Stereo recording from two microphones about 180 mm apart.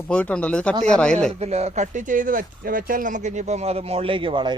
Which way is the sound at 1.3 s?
35° right (ahead or behind).